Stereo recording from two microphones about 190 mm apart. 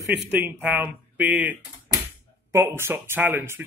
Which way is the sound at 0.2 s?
5° right (ahead or behind).